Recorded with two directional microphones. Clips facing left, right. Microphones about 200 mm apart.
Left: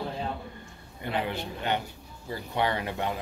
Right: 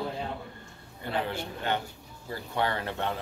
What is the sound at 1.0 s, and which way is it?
Speech, 15° left (ahead or behind).